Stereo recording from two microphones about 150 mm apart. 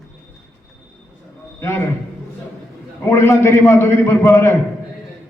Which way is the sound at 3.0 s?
20° left (ahead or behind).